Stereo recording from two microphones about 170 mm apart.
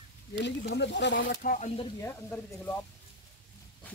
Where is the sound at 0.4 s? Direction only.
90° left.